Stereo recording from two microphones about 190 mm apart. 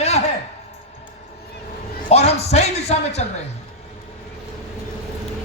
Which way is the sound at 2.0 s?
35° left (ahead or behind).